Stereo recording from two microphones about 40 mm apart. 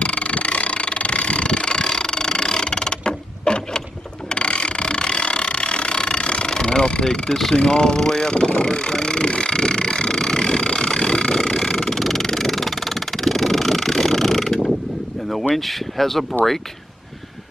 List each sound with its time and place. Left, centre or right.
0.0 s vehicle: left
4.3 s mechanisms: left
7.6 s vehicle: centre
15.5 s speech: centre